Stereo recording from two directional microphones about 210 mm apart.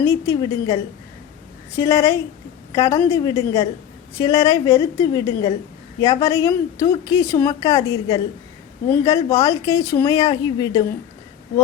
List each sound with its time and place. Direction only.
0.0 s a woman's voice: 15° left (ahead or behind)